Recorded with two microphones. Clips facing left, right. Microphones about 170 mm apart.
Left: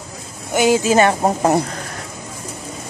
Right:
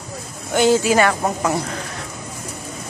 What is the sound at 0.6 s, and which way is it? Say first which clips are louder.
A woman's voice: left 1 dB; 15° left (ahead or behind).